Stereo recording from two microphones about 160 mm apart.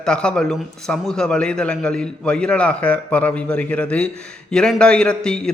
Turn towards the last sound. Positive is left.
turn(degrees=5)  # may be behind; listen again after turning